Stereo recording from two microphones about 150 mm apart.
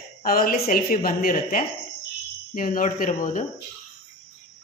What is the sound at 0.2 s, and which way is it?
A woman's voice, 70° left (ahead or behind).